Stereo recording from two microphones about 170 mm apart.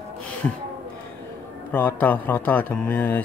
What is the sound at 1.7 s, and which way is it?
A man's voice, 10° left (ahead or behind).